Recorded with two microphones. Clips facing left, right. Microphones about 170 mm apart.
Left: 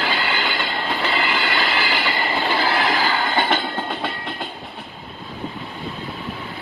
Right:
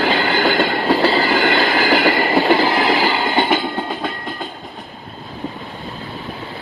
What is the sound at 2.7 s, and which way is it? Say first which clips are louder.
Train: right 4 dB; 20° right (ahead or behind).